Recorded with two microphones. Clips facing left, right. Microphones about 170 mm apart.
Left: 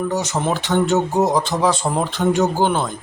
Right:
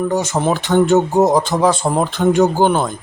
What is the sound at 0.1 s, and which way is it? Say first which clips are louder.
Speech: right 4 dB; 50° right (ahead or behind).